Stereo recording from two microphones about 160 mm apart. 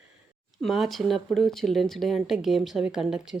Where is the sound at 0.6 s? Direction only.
Centre (ahead or behind).